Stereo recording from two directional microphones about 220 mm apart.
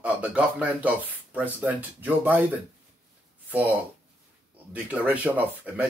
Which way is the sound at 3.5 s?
5° right (ahead or behind).